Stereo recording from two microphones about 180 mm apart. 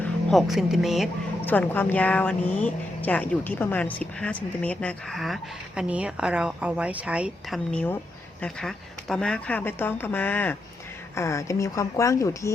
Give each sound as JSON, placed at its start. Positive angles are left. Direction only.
{"t": 0.0, "sound": "speech", "side_deg": 0}
{"t": 1.5, "sound": "a woman's voice", "side_deg": 10}